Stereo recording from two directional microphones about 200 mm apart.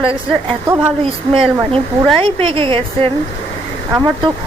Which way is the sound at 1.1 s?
25° right (ahead or behind).